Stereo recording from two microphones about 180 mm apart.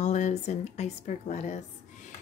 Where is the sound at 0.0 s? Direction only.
40° left (ahead or behind).